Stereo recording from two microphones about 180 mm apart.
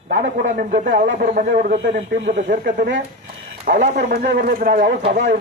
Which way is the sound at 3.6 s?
45° right (ahead or behind).